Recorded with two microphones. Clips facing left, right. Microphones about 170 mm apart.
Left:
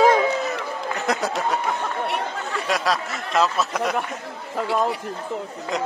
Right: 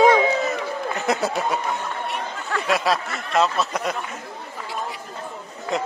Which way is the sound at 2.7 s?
Centre (ahead or behind).